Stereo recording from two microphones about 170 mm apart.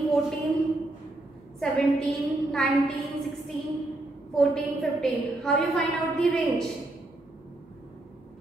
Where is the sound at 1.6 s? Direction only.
5° left (ahead or behind).